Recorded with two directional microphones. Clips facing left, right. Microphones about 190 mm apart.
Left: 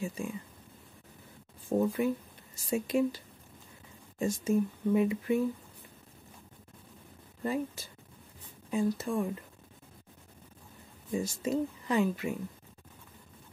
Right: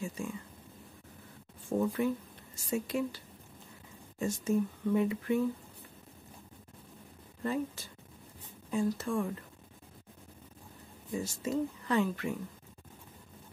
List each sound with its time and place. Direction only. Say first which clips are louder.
0.0 s a sound: left 2 dB; 15° left (ahead or behind)
1.7 s speech: left 2 dB; 20° left (ahead or behind)
4.2 s speech: left 2 dB; 15° left (ahead or behind)
7.4 s speech: left 1 dB; 10° left (ahead or behind)
11.1 s speech: left 2 dB; 15° left (ahead or behind)